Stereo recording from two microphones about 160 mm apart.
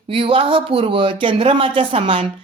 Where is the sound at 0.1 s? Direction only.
35° right (ahead or behind).